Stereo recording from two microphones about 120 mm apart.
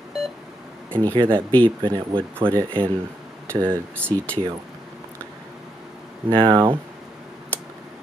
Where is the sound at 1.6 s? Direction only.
45° right (ahead or behind).